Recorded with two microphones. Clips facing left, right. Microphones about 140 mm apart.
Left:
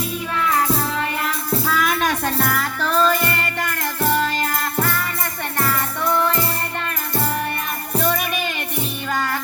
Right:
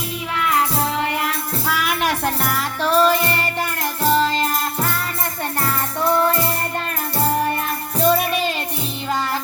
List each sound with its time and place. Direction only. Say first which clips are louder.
1.2 s music: left 1 dB; 15° right (ahead or behind)
8.0 s music: right 6 dB; 30° right (ahead or behind)